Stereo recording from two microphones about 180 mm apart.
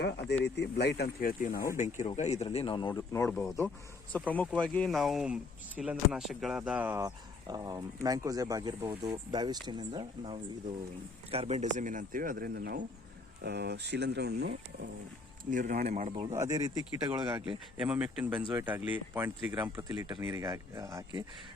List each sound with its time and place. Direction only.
0.4 s speech: 65° left (ahead or behind)
1.8 s speech: 40° left (ahead or behind); by 3.2 s 15° left (ahead or behind)
4.3 s speech: 5° left (ahead or behind); by 7.0 s 10° right (ahead or behind)
7.0 s speech: 20° right (ahead or behind); by 14.5 s 65° right (ahead or behind)
15.4 s speech: 45° right (ahead or behind)
16.3 s speech: 15° right (ahead or behind)
17.7 s speech: 5° right (ahead or behind)